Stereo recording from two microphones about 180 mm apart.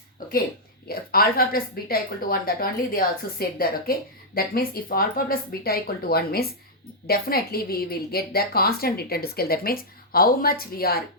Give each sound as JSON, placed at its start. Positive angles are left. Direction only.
{"t": 0.9, "sound": "speech", "side_deg": 55}